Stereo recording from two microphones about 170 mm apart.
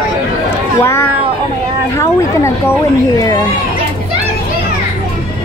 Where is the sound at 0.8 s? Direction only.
15° left (ahead or behind).